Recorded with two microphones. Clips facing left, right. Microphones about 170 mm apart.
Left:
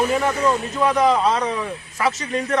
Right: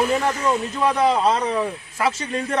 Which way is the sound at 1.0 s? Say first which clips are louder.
Left 1 dB; 30° right (ahead or behind).